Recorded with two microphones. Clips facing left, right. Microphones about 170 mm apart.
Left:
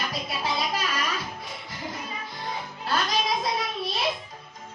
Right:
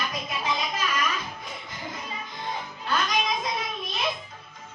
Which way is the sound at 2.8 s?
35° left (ahead or behind).